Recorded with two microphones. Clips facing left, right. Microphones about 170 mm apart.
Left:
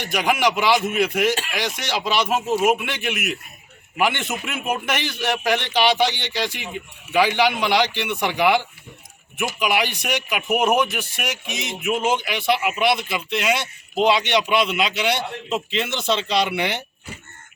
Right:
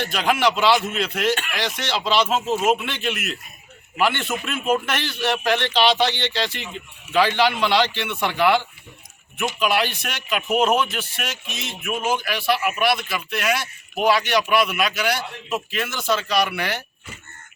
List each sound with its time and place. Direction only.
0.0 s a man's voice: 15° left (ahead or behind)